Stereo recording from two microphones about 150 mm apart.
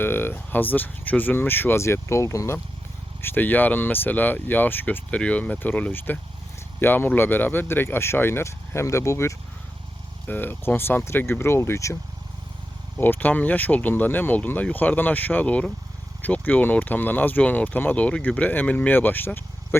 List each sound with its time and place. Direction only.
0.0 s speech: 15° left (ahead or behind)
13.0 s speech: 10° left (ahead or behind)